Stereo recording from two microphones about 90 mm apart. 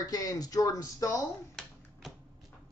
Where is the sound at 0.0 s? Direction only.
40° left (ahead or behind).